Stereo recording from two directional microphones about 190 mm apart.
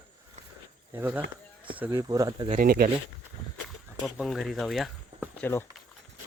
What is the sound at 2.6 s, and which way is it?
Speech, 50° right (ahead or behind).